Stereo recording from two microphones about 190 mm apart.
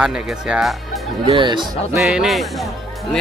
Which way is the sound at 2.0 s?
Centre (ahead or behind).